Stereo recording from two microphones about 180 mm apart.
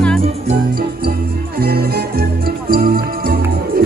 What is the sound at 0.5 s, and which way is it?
Music, 60° right (ahead or behind).